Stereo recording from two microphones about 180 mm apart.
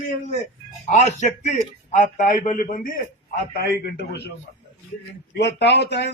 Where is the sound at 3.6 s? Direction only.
60° left (ahead or behind).